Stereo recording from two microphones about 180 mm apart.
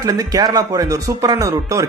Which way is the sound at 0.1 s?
20° right (ahead or behind).